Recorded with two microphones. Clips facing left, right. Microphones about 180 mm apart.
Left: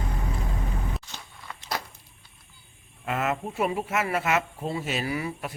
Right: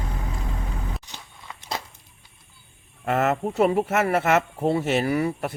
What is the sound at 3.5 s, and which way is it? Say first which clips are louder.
Speech: right 8 dB; 65° right (ahead or behind).